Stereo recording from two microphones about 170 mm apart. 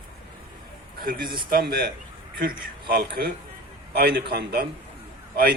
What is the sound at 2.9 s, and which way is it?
A man's voice, 70° right (ahead or behind).